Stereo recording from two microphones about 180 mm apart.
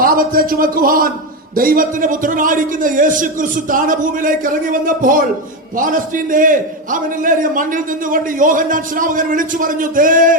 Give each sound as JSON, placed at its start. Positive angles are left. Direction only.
{"t": 0.0, "sound": "a man's voice", "side_deg": -55}